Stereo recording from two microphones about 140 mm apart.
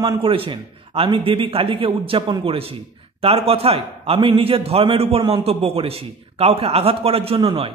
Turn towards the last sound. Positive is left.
turn(degrees=-40)  # may be behind; listen again after turning